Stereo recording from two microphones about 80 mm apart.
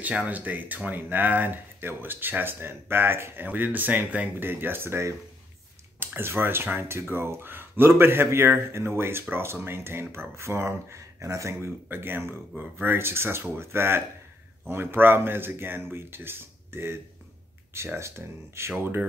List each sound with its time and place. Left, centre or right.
0.0 s speech: centre; by 18.9 s right